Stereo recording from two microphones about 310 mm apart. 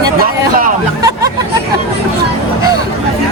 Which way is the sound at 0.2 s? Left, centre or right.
Right.